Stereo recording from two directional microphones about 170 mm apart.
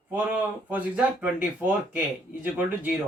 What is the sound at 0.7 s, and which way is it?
A man's voice, 10° right (ahead or behind).